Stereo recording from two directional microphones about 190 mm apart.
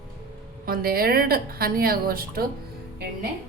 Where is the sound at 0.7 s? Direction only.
50° right (ahead or behind).